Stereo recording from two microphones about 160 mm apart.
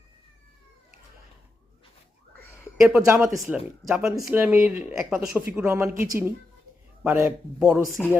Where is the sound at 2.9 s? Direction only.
15° right (ahead or behind).